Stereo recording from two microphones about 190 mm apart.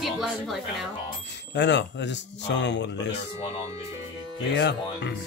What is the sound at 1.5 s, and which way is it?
Speech, 70° left (ahead or behind).